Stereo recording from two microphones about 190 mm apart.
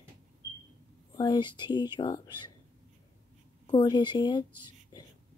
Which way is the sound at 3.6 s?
20° left (ahead or behind).